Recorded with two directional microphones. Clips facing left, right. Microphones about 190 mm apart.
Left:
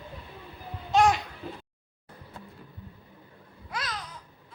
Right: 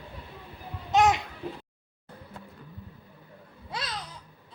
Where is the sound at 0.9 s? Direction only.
20° right (ahead or behind).